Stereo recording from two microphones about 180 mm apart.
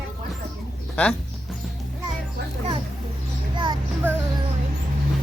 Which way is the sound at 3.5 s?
25° right (ahead or behind).